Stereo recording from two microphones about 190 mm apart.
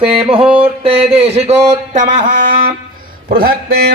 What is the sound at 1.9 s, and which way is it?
Music, 40° right (ahead or behind).